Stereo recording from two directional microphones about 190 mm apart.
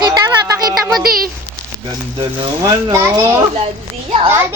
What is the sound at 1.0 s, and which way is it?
Speech, 50° right (ahead or behind).